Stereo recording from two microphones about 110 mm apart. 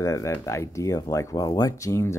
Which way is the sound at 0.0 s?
30° left (ahead or behind).